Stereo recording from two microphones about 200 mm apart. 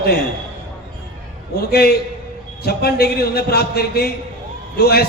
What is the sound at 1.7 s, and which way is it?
A man's voice, 50° left (ahead or behind).